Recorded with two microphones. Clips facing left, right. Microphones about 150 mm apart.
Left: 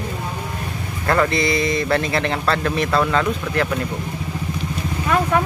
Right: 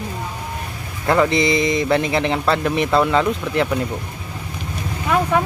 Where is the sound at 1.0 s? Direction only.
15° right (ahead or behind).